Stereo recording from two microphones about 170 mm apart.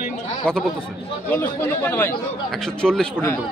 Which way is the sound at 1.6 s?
10° left (ahead or behind).